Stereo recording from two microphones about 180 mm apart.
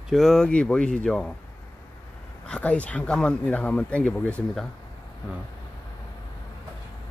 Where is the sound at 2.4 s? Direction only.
5° left (ahead or behind).